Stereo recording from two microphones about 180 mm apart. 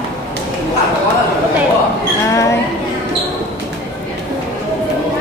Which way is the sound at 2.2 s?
15° left (ahead or behind).